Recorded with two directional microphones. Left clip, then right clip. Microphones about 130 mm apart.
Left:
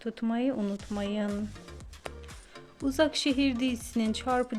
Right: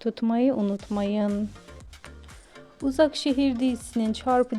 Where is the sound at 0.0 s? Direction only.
80° right.